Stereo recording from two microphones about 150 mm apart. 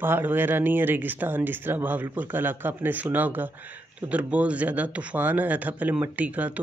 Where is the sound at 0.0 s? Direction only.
15° right (ahead or behind).